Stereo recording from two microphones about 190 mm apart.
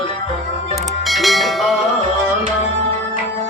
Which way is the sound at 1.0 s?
Centre (ahead or behind).